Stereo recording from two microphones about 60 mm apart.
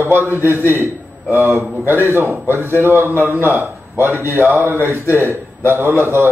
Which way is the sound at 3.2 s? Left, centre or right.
Right.